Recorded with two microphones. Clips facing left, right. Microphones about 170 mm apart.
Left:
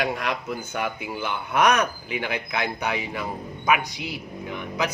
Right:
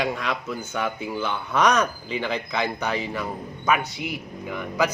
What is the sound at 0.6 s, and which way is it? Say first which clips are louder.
Speech: right 1 dB; 10° left (ahead or behind).